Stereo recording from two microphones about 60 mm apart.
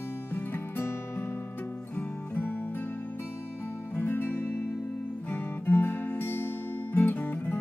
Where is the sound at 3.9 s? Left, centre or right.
Left.